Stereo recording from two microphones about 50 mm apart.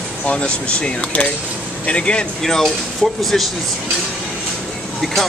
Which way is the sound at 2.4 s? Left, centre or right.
Centre.